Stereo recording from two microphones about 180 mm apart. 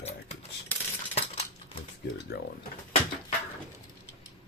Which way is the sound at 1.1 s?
35° left (ahead or behind).